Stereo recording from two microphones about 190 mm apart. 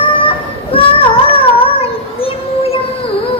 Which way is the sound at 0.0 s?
30° left (ahead or behind).